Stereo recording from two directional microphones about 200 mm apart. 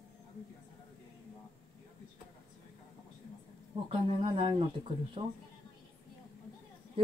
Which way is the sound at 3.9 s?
30° right (ahead or behind).